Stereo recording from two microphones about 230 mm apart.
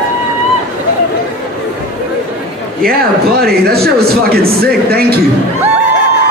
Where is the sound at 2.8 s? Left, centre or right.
Right.